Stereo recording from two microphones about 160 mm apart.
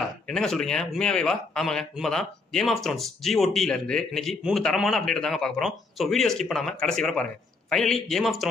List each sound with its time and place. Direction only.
0.3 s a man's voice: 5° left (ahead or behind)